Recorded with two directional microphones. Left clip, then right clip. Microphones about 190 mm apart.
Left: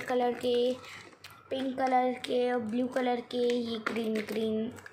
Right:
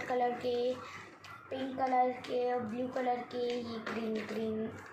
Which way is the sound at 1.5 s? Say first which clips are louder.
Left 4 dB; 50° left (ahead or behind).